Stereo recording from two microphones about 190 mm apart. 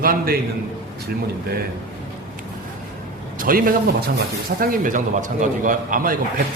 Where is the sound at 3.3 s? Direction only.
45° right (ahead or behind).